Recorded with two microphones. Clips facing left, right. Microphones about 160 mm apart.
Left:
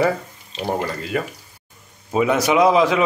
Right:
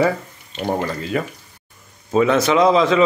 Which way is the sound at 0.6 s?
5° left (ahead or behind).